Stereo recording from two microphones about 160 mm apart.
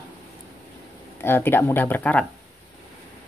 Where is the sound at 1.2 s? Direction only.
15° left (ahead or behind).